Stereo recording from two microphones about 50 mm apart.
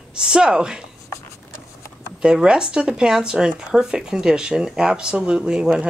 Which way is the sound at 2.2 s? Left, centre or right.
Centre.